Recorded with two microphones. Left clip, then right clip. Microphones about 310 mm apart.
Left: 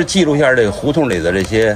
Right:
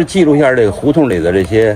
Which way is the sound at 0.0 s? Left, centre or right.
Right.